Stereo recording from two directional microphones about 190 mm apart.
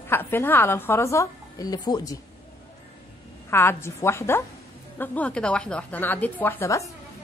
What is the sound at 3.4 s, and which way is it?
A woman's voice, 10° left (ahead or behind).